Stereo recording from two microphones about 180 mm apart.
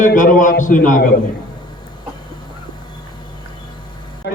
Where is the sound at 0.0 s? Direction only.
45° left (ahead or behind).